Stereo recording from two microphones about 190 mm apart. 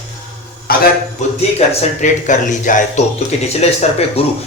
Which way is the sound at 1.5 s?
40° left (ahead or behind).